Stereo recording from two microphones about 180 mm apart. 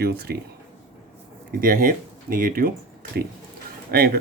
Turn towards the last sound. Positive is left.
turn(degrees=-60)  # may be behind; listen again after turning